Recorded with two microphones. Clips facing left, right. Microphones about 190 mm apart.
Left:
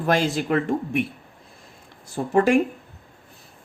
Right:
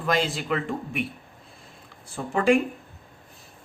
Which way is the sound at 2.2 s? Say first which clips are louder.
Left 5 dB; 40° left (ahead or behind).